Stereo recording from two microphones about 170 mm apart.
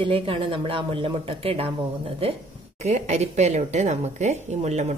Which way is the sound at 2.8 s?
40° right (ahead or behind).